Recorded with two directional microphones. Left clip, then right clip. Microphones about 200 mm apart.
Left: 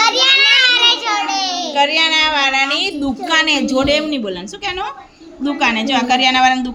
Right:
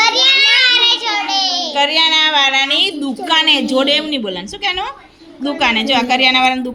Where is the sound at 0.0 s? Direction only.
5° right (ahead or behind).